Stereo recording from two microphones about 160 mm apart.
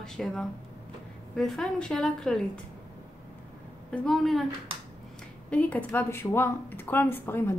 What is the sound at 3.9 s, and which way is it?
Speech, centre (ahead or behind).